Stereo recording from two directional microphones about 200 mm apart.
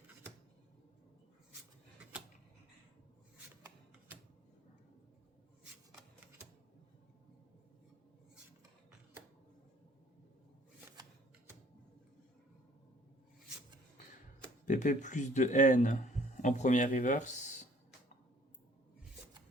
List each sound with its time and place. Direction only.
14.6 s speech: 40° left (ahead or behind)